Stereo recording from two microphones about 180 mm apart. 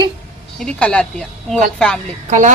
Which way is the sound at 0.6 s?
5° left (ahead or behind).